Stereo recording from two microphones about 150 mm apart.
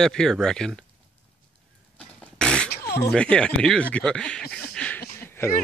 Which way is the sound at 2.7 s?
90° left.